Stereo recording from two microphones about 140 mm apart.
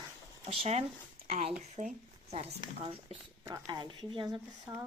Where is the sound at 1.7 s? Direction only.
55° right (ahead or behind).